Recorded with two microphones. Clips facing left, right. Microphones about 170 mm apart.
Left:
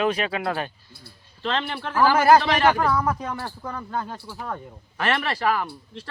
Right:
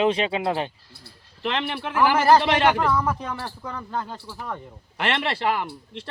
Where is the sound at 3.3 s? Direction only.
10° left (ahead or behind).